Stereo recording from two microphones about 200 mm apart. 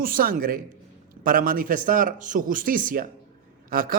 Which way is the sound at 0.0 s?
45° right (ahead or behind).